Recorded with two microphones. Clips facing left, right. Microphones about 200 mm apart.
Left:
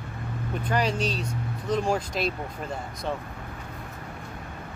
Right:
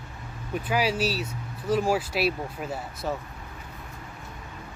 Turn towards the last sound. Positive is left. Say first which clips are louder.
# even
turn(degrees=-5)  # may be behind; listen again after turning